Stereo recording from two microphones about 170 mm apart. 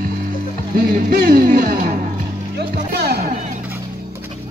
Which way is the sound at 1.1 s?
60° right (ahead or behind).